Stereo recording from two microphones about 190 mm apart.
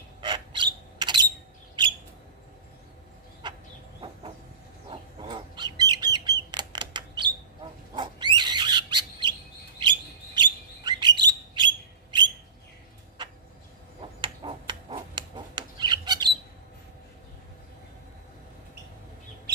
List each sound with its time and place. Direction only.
0.2 s a sound: 25° right (ahead or behind)
3.4 s chicken: 25° right (ahead or behind)
5.3 s bird: 20° right (ahead or behind)
7.9 s owl: 25° right (ahead or behind)
9.8 s bird: 25° right (ahead or behind)
14.2 s a sound: 25° right (ahead or behind)